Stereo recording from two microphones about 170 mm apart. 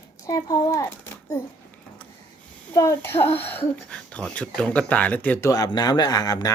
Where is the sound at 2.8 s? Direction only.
15° left (ahead or behind).